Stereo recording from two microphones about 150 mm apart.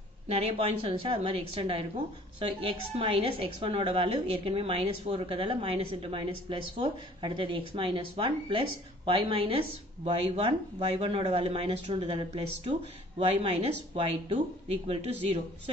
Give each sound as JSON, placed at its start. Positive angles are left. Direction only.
{"t": 0.3, "sound": "a woman's voice", "side_deg": -40}